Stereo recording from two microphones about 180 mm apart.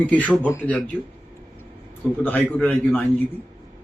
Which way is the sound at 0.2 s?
10° right (ahead or behind).